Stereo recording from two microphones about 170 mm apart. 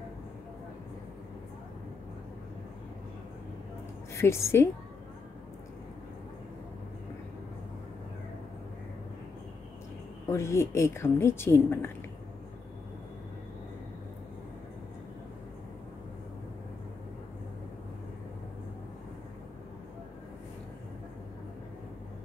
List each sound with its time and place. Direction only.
4.1 s a woman's voice: 15° left (ahead or behind)
10.2 s a woman's voice: 15° left (ahead or behind)